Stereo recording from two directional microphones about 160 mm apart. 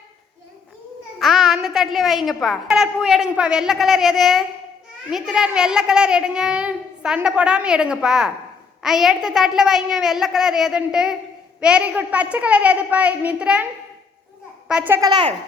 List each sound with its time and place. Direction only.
1.2 s a woman's voice: centre (ahead or behind)
14.7 s a child's voice: 10° right (ahead or behind)
15.0 s speech: 30° right (ahead or behind)